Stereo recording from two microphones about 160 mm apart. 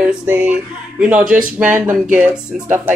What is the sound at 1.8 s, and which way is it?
Speech, 55° right (ahead or behind).